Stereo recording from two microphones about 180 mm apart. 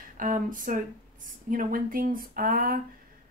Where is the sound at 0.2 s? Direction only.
50° right (ahead or behind).